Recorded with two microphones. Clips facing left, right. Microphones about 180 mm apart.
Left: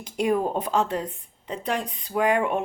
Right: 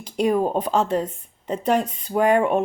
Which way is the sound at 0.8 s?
40° right (ahead or behind).